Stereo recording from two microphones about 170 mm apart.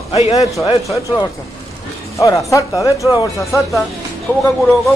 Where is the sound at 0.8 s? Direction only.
20° left (ahead or behind).